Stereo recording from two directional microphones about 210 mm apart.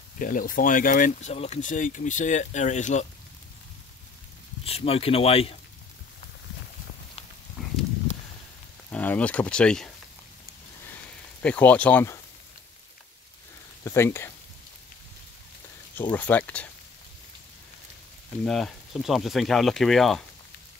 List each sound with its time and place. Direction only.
0.2 s speech: 40° left (ahead or behind)
4.6 s speech: 30° left (ahead or behind)
7.6 s a sound: centre (ahead or behind)
8.9 s speech: 5° left (ahead or behind)
11.4 s speech: 5° left (ahead or behind)
13.8 s speech: 10° left (ahead or behind)
16.0 s speech: 10° left (ahead or behind)
18.4 s speech: centre (ahead or behind)